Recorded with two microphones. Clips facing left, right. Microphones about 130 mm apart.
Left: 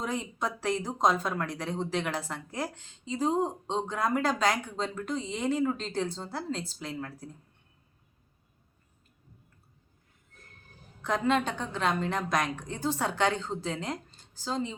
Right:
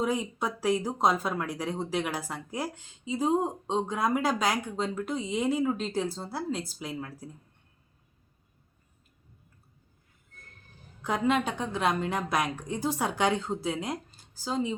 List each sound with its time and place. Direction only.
0.0 s speech: 10° right (ahead or behind)
11.0 s speech: 5° right (ahead or behind)